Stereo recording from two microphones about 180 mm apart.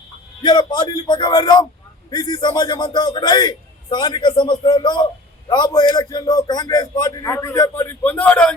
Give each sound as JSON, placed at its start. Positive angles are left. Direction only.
{"t": 0.4, "sound": "a man's voice", "side_deg": 25}